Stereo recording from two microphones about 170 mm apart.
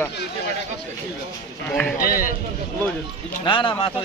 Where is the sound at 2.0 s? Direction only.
55° left (ahead or behind).